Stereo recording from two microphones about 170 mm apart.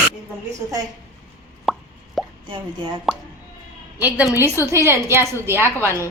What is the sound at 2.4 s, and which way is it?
Speech, 30° right (ahead or behind).